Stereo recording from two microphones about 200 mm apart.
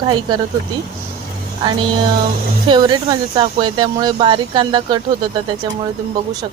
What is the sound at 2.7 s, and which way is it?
Speech, 20° right (ahead or behind).